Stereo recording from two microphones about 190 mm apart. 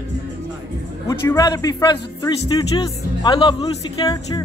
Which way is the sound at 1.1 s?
20° left (ahead or behind).